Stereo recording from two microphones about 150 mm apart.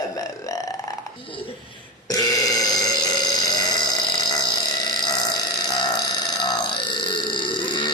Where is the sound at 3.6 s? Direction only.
25° left (ahead or behind).